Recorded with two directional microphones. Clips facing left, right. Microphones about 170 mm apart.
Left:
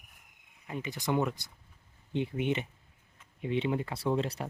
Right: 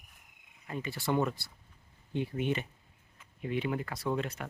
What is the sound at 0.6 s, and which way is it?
Speech, 15° left (ahead or behind).